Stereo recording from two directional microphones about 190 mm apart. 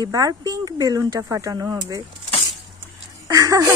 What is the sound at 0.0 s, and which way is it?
Speech, 20° right (ahead or behind).